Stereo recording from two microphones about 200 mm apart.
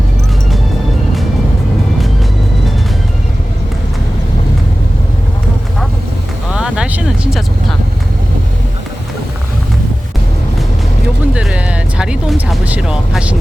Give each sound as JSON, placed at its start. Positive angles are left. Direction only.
{"t": 6.5, "sound": "vehicle", "side_deg": -5}
{"t": 11.3, "sound": "music", "side_deg": -5}